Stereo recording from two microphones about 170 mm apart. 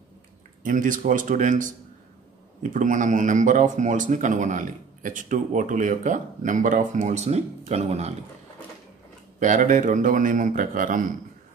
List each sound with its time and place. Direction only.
0.7 s speech: 50° right (ahead or behind)
2.7 s speech: 50° right (ahead or behind)
9.4 s speech: 50° right (ahead or behind)